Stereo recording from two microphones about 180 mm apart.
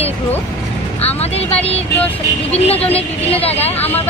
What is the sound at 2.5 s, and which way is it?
Speech, 35° left (ahead or behind).